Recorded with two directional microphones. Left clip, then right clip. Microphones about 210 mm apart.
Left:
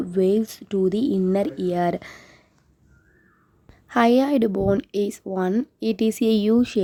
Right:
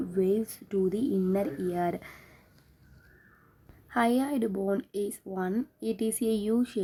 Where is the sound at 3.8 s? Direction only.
35° left (ahead or behind).